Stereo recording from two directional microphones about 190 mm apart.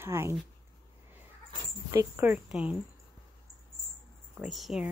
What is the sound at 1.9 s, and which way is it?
Speech, 15° right (ahead or behind).